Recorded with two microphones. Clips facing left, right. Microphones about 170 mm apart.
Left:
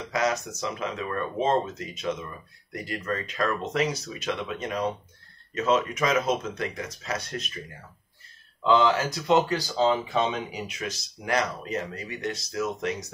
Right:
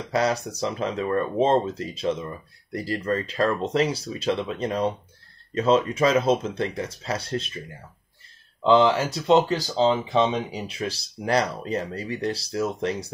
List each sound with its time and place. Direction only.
0.1 s speech: 35° right (ahead or behind)
8.6 s speech: 30° right (ahead or behind)
10.5 s speech: 30° right (ahead or behind)